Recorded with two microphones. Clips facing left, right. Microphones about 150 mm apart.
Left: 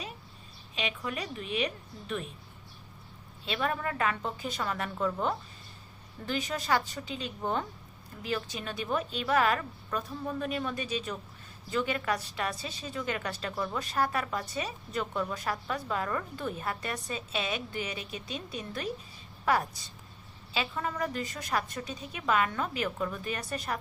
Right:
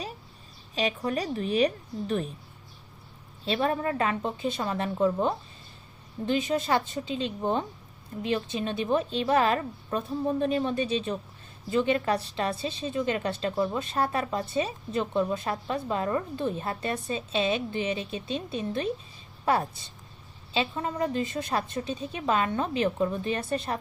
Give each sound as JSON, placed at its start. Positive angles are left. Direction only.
{"t": 0.8, "sound": "a woman's voice", "side_deg": -35}
{"t": 3.4, "sound": "a woman's voice", "side_deg": -30}